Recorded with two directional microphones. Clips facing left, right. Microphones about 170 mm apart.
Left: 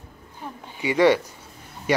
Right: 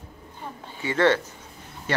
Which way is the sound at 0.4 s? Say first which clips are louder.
Left 3 dB; 15° left (ahead or behind).